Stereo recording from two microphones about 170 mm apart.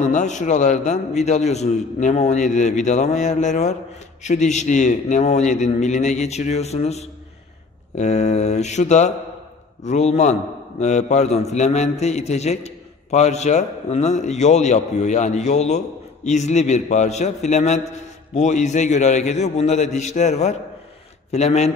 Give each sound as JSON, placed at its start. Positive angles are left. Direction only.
{"t": 0.0, "sound": "a man's voice", "side_deg": 45}